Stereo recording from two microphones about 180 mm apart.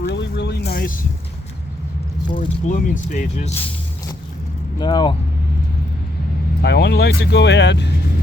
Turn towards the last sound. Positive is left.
turn(degrees=75)  # may be behind; listen again after turning